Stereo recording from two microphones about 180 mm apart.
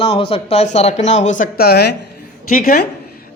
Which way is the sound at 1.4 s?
60° left (ahead or behind).